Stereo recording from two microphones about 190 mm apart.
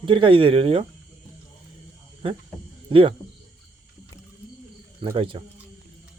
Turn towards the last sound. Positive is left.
turn(degrees=-25)  # may be behind; listen again after turning